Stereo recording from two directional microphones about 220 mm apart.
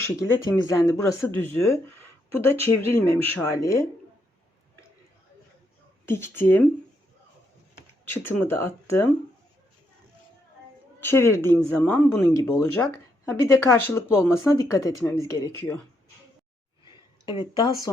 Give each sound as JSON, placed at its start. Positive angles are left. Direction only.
{"t": 0.0, "sound": "speech", "side_deg": 15}
{"t": 6.1, "sound": "speech", "side_deg": 10}
{"t": 8.0, "sound": "speech", "side_deg": 10}
{"t": 11.0, "sound": "speech", "side_deg": 10}
{"t": 17.9, "sound": "speech", "side_deg": 15}